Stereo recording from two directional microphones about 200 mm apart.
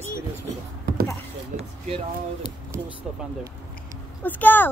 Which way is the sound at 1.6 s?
30° right (ahead or behind).